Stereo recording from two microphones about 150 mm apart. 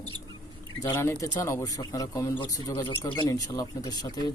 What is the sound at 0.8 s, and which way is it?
Speech, 20° left (ahead or behind).